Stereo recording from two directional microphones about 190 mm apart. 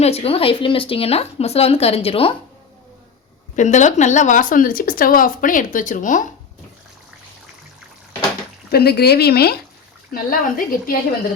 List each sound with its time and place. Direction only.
0.0 s speech: 30° left (ahead or behind)
3.5 s speech: 40° left (ahead or behind)
8.7 s speech: 55° left (ahead or behind)